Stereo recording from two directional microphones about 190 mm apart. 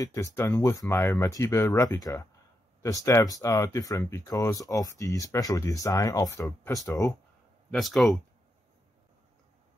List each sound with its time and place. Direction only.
0.0 s speech: 15° left (ahead or behind)
7.7 s speech: centre (ahead or behind)